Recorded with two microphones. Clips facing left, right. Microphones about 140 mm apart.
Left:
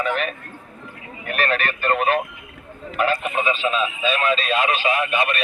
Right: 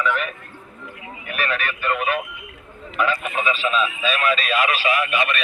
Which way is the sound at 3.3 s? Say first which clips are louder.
Even; 30° left (ahead or behind).